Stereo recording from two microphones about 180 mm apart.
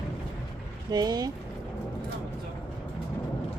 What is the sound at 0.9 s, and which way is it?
Speech, 20° right (ahead or behind).